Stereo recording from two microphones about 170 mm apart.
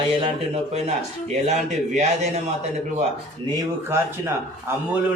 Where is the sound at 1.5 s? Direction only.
40° right (ahead or behind).